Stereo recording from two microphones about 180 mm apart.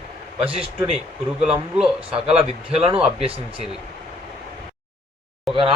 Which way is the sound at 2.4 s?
30° right (ahead or behind).